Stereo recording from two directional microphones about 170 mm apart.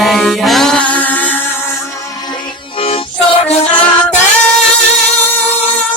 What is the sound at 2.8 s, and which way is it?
Music, 35° left (ahead or behind).